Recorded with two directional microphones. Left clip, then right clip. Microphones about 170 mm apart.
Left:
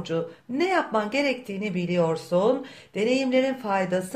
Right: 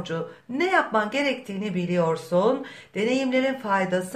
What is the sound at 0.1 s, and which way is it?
Speech, 20° left (ahead or behind).